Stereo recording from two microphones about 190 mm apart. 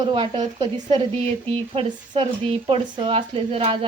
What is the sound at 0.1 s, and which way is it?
Speech, 25° right (ahead or behind).